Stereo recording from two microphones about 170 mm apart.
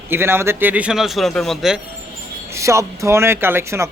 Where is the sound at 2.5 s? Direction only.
15° right (ahead or behind).